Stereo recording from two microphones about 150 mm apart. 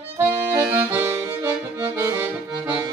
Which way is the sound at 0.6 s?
10° right (ahead or behind).